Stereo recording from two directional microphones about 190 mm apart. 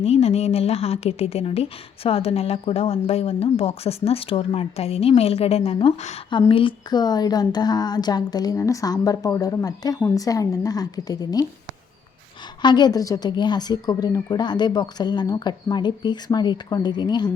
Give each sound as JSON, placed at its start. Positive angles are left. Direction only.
{"t": 0.0, "sound": "speech", "side_deg": 35}
{"t": 12.6, "sound": "speech", "side_deg": 20}